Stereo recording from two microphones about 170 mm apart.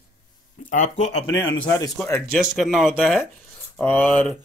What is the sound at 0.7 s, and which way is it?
Speech, 45° left (ahead or behind).